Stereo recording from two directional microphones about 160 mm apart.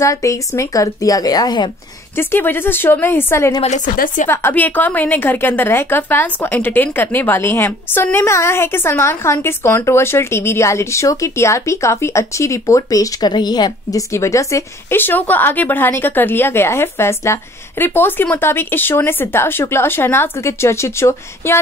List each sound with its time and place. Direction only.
0.0 s a woman's voice: 20° left (ahead or behind)
2.1 s a woman's voice: 15° left (ahead or behind)
3.6 s a woman's voice: 50° left (ahead or behind)
4.3 s a woman's voice: 15° left (ahead or behind)